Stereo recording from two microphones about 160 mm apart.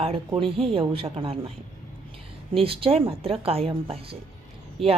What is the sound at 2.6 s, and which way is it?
A woman's voice, 35° right (ahead or behind).